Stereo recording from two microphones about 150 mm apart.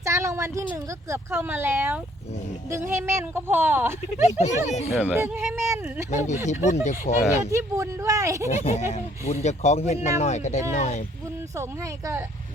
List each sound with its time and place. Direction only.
0.0 s a sound: 20° right (ahead or behind)
1.1 s speech: 15° right (ahead or behind)
4.3 s speech: 50° left (ahead or behind)
5.0 s speech: 15° right (ahead or behind)
6.1 s speech: 50° left (ahead or behind)
7.5 s speech: 20° right (ahead or behind)
8.4 s speech: 50° left (ahead or behind)